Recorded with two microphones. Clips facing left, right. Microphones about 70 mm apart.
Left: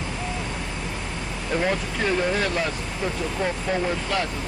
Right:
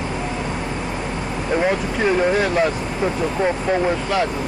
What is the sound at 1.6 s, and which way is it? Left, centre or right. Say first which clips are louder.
Speech: right 5 dB; centre.